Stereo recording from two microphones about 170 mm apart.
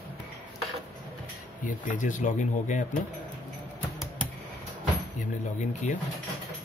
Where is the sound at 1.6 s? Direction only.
50° left (ahead or behind).